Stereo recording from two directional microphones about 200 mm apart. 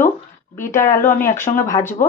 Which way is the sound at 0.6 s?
15° left (ahead or behind).